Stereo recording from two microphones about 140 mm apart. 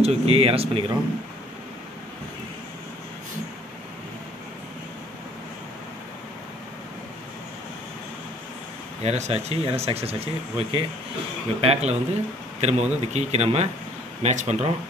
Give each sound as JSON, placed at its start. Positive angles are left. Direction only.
{"t": 0.0, "sound": "speech", "side_deg": -45}
{"t": 9.0, "sound": "speech", "side_deg": -50}